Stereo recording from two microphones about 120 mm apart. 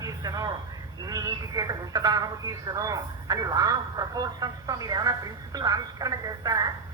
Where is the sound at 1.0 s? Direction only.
30° right (ahead or behind).